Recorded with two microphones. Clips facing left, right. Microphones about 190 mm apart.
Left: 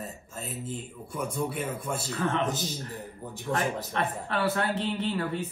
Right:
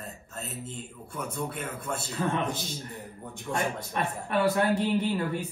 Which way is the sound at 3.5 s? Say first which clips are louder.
Left 1 dB; 15° right (ahead or behind).